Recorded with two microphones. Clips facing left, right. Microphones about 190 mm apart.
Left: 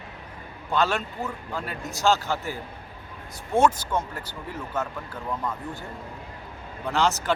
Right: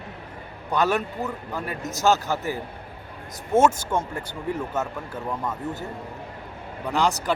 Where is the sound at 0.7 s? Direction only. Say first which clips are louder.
Right 2 dB; 20° right (ahead or behind).